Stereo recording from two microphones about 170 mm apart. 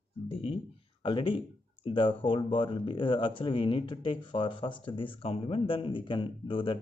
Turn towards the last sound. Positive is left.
turn(degrees=30)  # may be behind; listen again after turning